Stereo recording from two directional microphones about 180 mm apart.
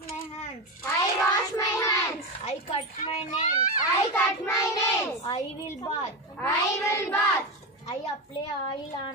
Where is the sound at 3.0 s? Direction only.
40° left (ahead or behind).